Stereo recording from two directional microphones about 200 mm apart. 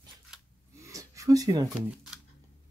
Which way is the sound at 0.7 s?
15° right (ahead or behind).